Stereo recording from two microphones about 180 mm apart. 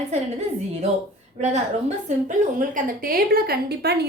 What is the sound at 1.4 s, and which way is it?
A woman's voice, 40° right (ahead or behind).